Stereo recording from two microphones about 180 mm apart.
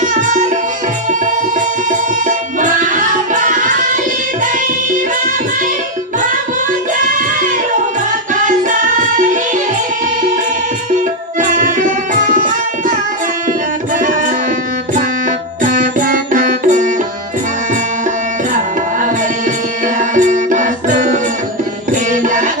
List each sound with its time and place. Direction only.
0.0 s music: 45° right (ahead or behind)
1.9 s music: 45° right (ahead or behind)
8.5 s music: 45° right (ahead or behind)
11.3 s music: 45° right (ahead or behind)
13.9 s music: 45° right (ahead or behind)
15.6 s music: 45° right (ahead or behind)
20.0 s music: 45° right (ahead or behind)